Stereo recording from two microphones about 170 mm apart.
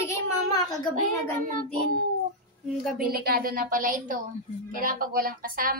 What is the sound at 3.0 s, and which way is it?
A woman's voice, 60° right (ahead or behind).